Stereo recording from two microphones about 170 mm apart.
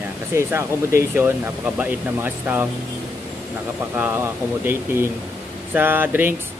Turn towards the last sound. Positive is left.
turn(degrees=-10)  # may be behind; listen again after turning